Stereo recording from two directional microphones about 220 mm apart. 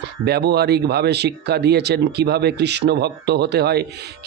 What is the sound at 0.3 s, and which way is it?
Speech, 45° right (ahead or behind).